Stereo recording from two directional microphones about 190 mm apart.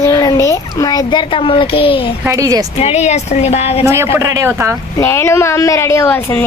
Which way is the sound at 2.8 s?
35° left (ahead or behind).